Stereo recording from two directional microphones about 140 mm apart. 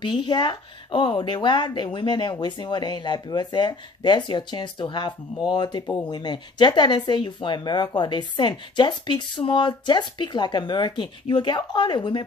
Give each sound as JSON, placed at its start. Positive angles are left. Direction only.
{"t": 0.0, "sound": "speech", "side_deg": 35}